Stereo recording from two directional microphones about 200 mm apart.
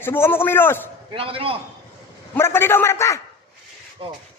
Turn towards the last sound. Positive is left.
turn(degrees=15)  # may be behind; listen again after turning